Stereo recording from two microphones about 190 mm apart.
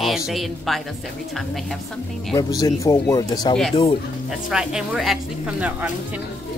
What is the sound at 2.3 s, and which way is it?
Speech, 15° left (ahead or behind).